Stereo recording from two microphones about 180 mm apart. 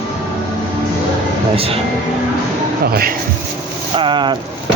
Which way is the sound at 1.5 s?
30° right (ahead or behind).